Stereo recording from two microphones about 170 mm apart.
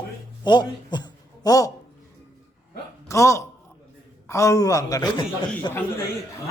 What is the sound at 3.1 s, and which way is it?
A man's voice, 15° left (ahead or behind).